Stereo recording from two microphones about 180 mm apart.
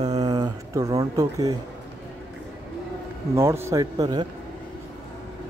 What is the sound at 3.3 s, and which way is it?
Speech, 15° right (ahead or behind).